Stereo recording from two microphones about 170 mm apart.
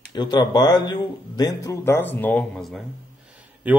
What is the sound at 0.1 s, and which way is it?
Speech, 25° left (ahead or behind).